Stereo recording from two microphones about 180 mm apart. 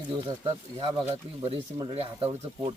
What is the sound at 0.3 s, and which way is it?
Speech, 30° right (ahead or behind).